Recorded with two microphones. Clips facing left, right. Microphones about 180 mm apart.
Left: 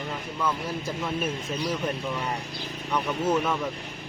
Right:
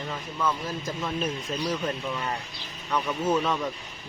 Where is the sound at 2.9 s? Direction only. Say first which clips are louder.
Even; 10° left (ahead or behind).